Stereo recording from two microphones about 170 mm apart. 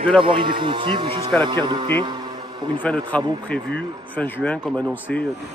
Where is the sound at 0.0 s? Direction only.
30° right (ahead or behind).